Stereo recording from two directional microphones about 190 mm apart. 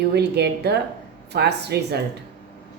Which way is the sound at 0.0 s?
60° right (ahead or behind).